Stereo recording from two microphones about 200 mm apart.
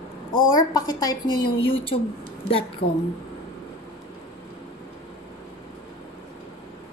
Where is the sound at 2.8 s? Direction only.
45° left (ahead or behind).